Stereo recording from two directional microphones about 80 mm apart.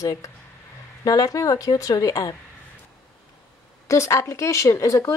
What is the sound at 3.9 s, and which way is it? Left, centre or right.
Speech, left.